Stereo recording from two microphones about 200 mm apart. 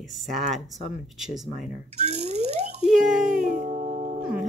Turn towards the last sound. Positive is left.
turn(degrees=-35)  # may be behind; listen again after turning